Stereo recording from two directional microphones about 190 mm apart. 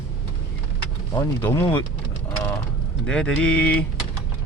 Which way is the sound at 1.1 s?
10° left (ahead or behind).